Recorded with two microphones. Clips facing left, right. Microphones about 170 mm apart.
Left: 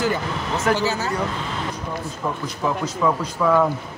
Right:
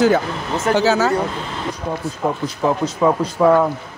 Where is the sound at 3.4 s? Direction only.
35° right (ahead or behind).